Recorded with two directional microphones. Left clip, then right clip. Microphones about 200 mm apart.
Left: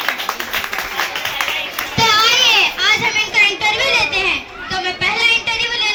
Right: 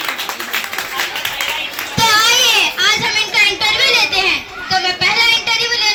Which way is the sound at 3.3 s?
40° right (ahead or behind).